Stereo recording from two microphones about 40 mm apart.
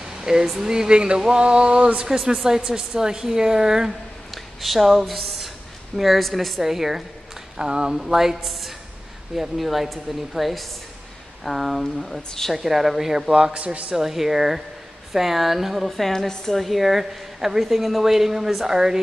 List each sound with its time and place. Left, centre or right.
0.0 s a sound: centre
0.6 s speech: centre
2.0 s speech: centre
4.6 s a sound: centre
5.9 s a woman's voice: centre
6.6 s speech: centre
7.5 s speech: right
8.0 s a woman's voice: centre
13.6 s a man's voice: right
13.9 s a woman's voice: centre
16.1 s a woman's voice: centre